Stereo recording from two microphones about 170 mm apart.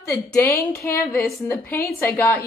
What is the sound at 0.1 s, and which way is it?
Speech, 10° left (ahead or behind).